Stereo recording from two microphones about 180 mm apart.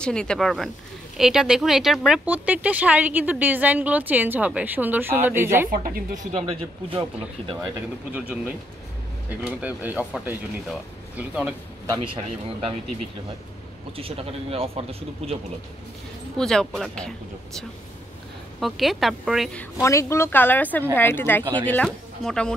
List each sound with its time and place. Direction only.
0.0 s a woman's voice: 5° left (ahead or behind); by 5.7 s 10° right (ahead or behind)
5.7 s speech: 50° right (ahead or behind)
6.5 s speech: 30° right (ahead or behind)
8.1 s speech: 5° right (ahead or behind)
11.8 s speech: 20° right (ahead or behind)
13.9 s speech: 30° right (ahead or behind)
16.3 s a woman's voice: 5° left (ahead or behind)
18.6 s a woman's voice: centre (ahead or behind)
19.8 s a woman's voice: 15° left (ahead or behind)